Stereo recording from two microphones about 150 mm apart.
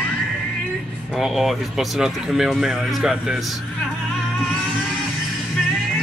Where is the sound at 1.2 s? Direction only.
Centre (ahead or behind).